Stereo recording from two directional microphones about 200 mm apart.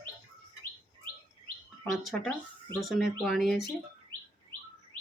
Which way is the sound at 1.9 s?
Centre (ahead or behind).